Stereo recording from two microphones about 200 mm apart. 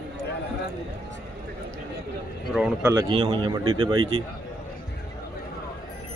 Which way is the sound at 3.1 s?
25° right (ahead or behind).